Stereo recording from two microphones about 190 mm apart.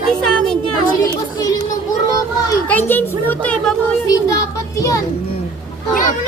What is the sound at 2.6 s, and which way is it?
A woman's voice, 10° left (ahead or behind).